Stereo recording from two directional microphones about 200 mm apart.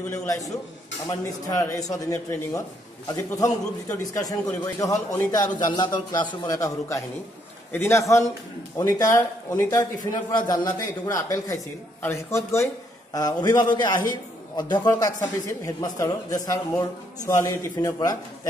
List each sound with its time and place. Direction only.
0.0 s a man's voice: 10° left (ahead or behind)
1.5 s a man's voice: 15° left (ahead or behind)